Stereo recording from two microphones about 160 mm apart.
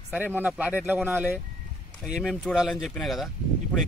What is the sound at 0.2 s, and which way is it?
Speech, 10° right (ahead or behind).